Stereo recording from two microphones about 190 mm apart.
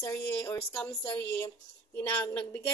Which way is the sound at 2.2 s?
10° left (ahead or behind).